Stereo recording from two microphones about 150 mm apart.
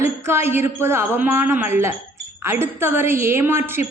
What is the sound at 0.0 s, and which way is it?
A woman's voice, 15° right (ahead or behind).